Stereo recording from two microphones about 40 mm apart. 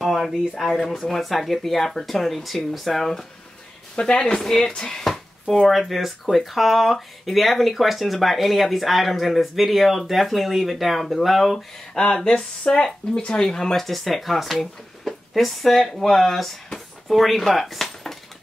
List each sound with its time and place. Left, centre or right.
0.0 s a sound: centre
0.7 s speech: centre
4.0 s speech: left
4.4 s speech: centre
5.0 s a sound: centre
5.7 s speech: centre
12.7 s speech: centre
13.8 s speech: centre
17.6 s dishes: centre